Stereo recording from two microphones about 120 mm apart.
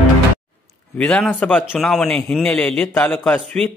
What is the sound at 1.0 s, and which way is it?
A man's voice, 10° left (ahead or behind).